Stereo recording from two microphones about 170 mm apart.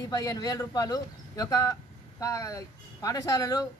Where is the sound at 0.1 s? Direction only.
20° left (ahead or behind).